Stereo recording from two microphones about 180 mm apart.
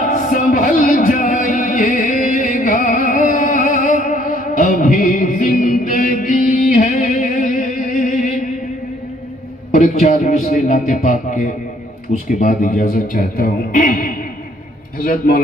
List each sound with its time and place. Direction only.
0.0 s music: 40° left (ahead or behind)
9.7 s a sound: 40° left (ahead or behind)
12.1 s a man's voice: 45° left (ahead or behind)